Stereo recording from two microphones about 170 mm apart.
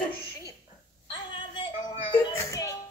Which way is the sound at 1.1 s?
25° left (ahead or behind).